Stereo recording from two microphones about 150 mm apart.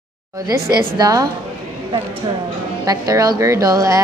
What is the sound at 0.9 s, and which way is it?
Speech, 25° right (ahead or behind).